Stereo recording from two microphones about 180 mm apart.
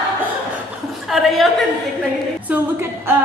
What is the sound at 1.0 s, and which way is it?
Speech, centre (ahead or behind).